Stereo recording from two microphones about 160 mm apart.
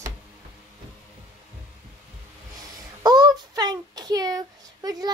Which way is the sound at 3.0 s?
25° right (ahead or behind).